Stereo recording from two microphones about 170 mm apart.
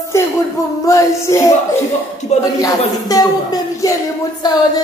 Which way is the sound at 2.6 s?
20° left (ahead or behind).